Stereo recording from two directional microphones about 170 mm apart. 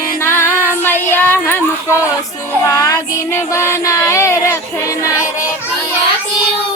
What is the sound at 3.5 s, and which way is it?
Speech, 15° left (ahead or behind).